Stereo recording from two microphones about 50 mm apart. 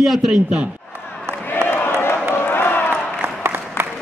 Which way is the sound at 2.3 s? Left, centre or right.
Left.